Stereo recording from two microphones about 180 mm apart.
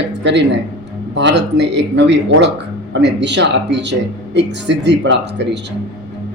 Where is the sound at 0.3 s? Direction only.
75° right (ahead or behind).